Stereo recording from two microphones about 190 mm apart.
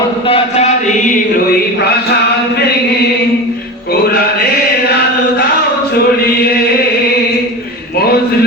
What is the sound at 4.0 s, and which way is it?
Music, 55° left (ahead or behind).